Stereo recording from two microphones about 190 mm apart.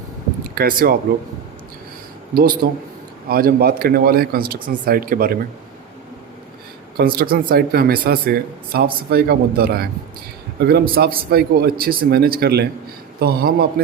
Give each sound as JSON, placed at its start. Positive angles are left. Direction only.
{"t": 0.5, "sound": "speech", "side_deg": -50}
{"t": 2.6, "sound": "a man's voice", "side_deg": -55}
{"t": 6.9, "sound": "a man's voice", "side_deg": -50}